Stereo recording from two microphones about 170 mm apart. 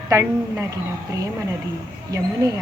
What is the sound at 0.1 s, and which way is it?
Speech, 15° right (ahead or behind).